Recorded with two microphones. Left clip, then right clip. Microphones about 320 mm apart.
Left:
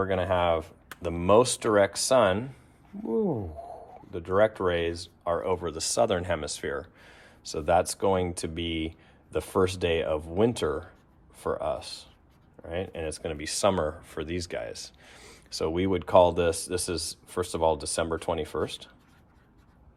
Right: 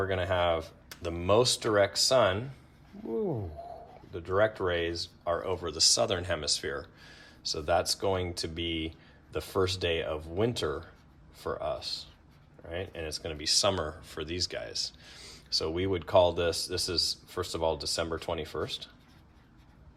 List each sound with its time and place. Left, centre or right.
0.0 s speech: left
4.1 s speech: left